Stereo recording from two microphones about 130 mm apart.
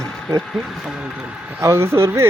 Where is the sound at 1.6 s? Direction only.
20° right (ahead or behind).